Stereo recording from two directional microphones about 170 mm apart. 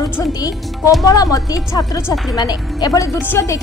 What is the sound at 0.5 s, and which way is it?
Speech, centre (ahead or behind).